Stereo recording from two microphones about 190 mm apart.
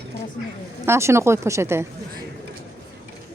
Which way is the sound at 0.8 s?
15° right (ahead or behind).